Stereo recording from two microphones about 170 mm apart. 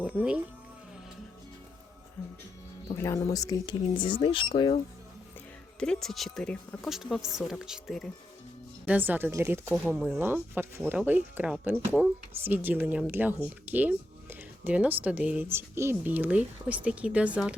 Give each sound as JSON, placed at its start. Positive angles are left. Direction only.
{"t": 0.0, "sound": "speech", "side_deg": -10}
{"t": 2.9, "sound": "speech", "side_deg": 15}
{"t": 5.8, "sound": "speech", "side_deg": 5}